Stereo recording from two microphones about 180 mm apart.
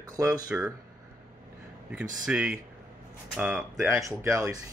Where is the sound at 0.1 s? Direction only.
20° right (ahead or behind).